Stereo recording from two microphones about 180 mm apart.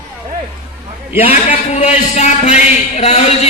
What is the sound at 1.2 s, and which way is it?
A man's voice, 35° left (ahead or behind).